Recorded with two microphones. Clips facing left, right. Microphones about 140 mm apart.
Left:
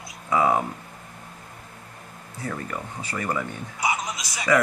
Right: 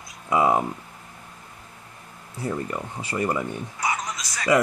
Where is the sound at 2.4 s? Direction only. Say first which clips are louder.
Right 3 dB; 25° right (ahead or behind).